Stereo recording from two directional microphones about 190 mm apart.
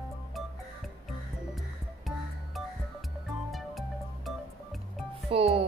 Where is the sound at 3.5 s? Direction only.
Centre (ahead or behind).